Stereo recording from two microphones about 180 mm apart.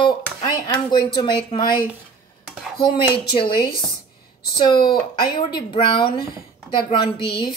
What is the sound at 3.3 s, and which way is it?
Speech, 30° left (ahead or behind).